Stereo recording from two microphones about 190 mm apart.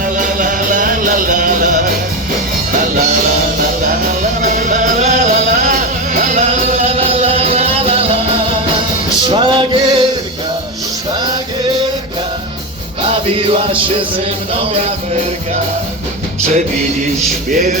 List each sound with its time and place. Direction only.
0.2 s music: 45° right (ahead or behind)
3.8 s music: 45° right (ahead or behind)
9.2 s music: 25° right (ahead or behind)
17.5 s music: 45° right (ahead or behind)